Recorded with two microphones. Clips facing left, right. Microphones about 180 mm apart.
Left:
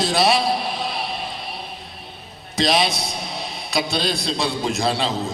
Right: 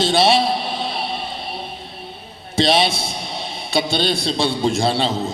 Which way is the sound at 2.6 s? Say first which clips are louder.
Right 3 dB; 25° right (ahead or behind).